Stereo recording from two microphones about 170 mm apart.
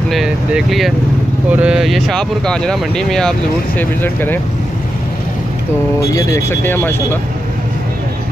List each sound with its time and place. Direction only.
0.1 s speech: centre (ahead or behind)
5.9 s speech: 20° left (ahead or behind)